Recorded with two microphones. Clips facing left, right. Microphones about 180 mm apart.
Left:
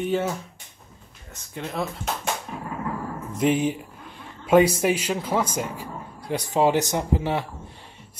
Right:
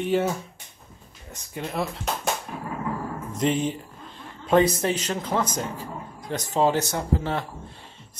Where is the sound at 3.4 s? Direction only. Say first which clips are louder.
Left 3 dB; 10° left (ahead or behind).